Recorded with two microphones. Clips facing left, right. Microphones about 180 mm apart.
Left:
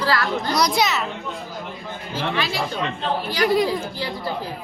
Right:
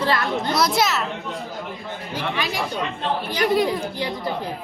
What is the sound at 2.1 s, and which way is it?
Speech, 15° right (ahead or behind).